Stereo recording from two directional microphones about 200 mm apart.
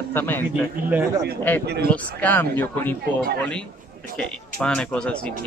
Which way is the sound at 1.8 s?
10° left (ahead or behind).